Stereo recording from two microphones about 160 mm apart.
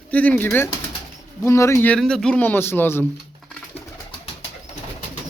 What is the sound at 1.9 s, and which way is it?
Speech, 5° left (ahead or behind).